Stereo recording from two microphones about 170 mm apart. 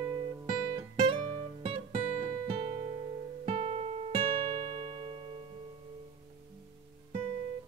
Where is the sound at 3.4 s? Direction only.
35° right (ahead or behind).